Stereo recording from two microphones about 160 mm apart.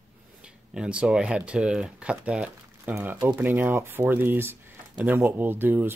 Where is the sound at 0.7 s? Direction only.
5° right (ahead or behind).